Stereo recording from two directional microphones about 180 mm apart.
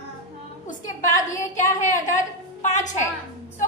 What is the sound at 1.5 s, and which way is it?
A woman's voice, 45° left (ahead or behind).